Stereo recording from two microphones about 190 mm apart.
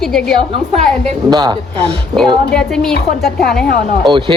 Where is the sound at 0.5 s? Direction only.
35° right (ahead or behind).